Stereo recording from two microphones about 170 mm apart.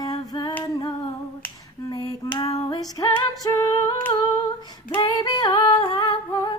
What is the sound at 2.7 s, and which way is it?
Music, 20° left (ahead or behind).